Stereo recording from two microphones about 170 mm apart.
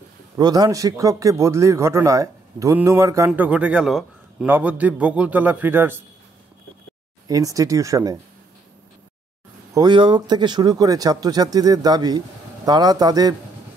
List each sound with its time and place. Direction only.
0.4 s a man's voice: 20° right (ahead or behind)
3.3 s a man's voice: 5° right (ahead or behind)
7.2 s a man's voice: 20° right (ahead or behind)
9.8 s a man's voice: 25° right (ahead or behind)